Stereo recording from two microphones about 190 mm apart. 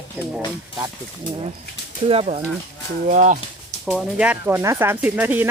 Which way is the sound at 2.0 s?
35° right (ahead or behind).